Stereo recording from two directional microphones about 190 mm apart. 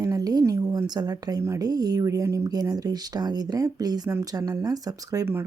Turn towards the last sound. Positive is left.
turn(degrees=-15)  # may be behind; listen again after turning